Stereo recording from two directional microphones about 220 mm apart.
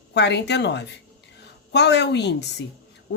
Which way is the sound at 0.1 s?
50° left (ahead or behind).